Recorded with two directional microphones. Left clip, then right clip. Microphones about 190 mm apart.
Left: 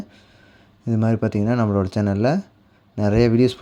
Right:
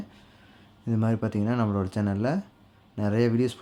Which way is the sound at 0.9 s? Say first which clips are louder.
Left 6 dB; 25° left (ahead or behind).